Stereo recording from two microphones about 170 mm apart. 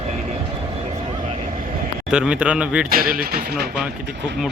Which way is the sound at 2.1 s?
5° right (ahead or behind).